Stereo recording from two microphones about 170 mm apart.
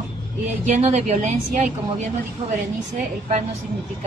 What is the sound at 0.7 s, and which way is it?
Speech, 40° right (ahead or behind).